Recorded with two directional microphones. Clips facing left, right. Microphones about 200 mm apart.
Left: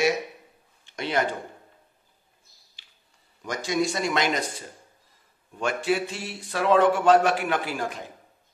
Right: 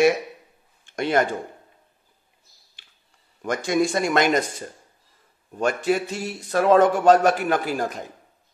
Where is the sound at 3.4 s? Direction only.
55° right (ahead or behind).